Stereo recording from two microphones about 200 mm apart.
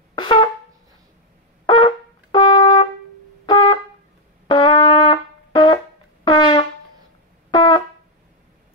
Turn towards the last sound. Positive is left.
turn(degrees=25)  # may be behind; listen again after turning